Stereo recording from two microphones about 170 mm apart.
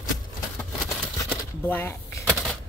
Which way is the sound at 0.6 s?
15° left (ahead or behind).